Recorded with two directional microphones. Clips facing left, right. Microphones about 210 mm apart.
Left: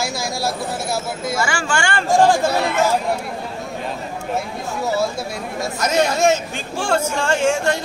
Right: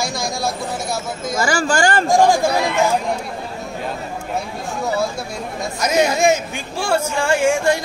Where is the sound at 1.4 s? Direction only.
35° right (ahead or behind).